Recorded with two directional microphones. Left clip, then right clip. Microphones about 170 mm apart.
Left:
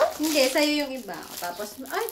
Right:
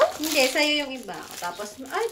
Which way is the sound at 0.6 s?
20° left (ahead or behind).